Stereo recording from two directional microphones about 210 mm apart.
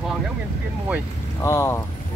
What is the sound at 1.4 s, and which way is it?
Speech, 15° left (ahead or behind).